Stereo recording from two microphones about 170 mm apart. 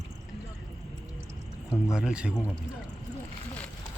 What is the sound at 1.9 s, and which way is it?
Speech, 5° right (ahead or behind).